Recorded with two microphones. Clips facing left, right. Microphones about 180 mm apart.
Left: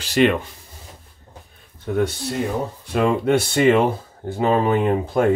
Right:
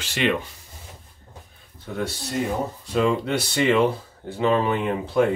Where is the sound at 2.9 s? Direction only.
55° left (ahead or behind).